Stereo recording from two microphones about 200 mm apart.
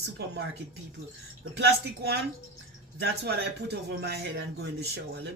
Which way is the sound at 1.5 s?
55° right (ahead or behind).